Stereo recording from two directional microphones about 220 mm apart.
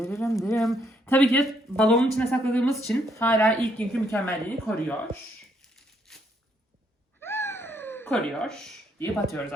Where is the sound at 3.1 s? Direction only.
10° left (ahead or behind).